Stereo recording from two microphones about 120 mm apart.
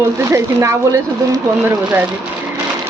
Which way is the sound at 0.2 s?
25° right (ahead or behind).